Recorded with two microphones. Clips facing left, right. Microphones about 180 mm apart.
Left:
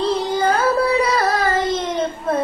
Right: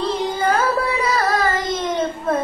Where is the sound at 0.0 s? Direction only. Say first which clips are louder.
Left 2 dB; 35° left (ahead or behind).